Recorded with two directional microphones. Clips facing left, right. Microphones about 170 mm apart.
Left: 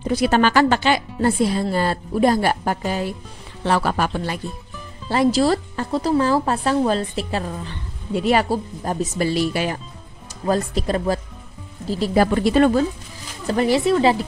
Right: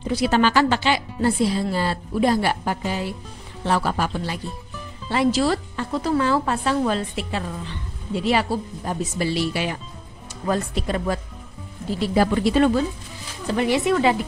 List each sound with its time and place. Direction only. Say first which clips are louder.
0.0 s speech: left 2 dB; 50° left (ahead or behind)
3.6 s speech: left 2 dB; 70° left (ahead or behind); by 4.4 s 55° left (ahead or behind)
5.1 s speech: left 3 dB; 40° left (ahead or behind)
8.1 s speech: left 3 dB; 50° left (ahead or behind)
12.2 s speech: left 2 dB; 50° left (ahead or behind)
13.5 s speech: left 3 dB; 35° left (ahead or behind)